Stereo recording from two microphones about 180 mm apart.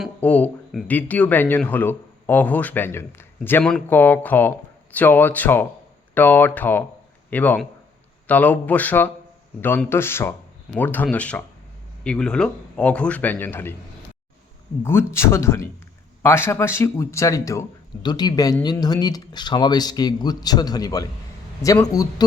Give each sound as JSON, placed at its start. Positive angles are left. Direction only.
{"t": 0.0, "sound": "a man's voice", "side_deg": 5}
{"t": 14.8, "sound": "speech", "side_deg": 15}